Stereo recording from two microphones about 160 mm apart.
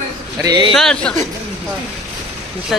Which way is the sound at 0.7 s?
5° left (ahead or behind).